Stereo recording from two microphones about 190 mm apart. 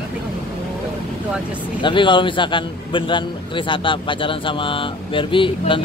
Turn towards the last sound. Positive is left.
turn(degrees=25)  # may be behind; listen again after turning